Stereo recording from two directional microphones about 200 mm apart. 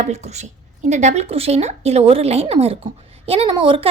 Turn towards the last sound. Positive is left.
turn(degrees=-30)  # may be behind; listen again after turning